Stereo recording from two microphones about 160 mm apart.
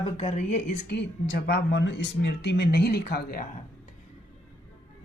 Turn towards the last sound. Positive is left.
turn(degrees=75)  # may be behind; listen again after turning